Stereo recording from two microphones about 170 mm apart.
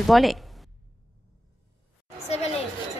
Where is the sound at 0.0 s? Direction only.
Centre (ahead or behind).